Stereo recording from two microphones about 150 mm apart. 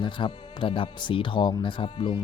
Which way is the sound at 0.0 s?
30° left (ahead or behind).